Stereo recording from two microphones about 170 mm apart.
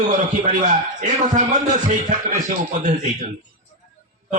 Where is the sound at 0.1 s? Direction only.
45° right (ahead or behind).